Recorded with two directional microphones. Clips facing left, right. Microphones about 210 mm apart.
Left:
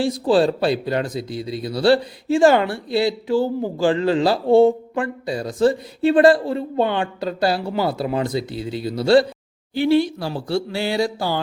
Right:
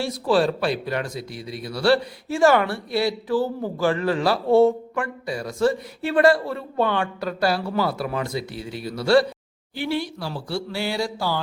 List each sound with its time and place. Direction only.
0.0 s speech: 30° left (ahead or behind)
3.8 s speech: 30° left (ahead or behind)
6.3 s speech: 20° left (ahead or behind)